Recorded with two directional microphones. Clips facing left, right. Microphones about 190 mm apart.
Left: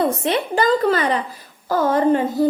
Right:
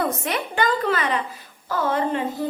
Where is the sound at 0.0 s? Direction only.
30° left (ahead or behind).